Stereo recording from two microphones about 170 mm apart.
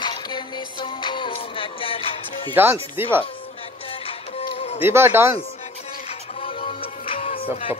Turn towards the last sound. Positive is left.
turn(degrees=35)  # may be behind; listen again after turning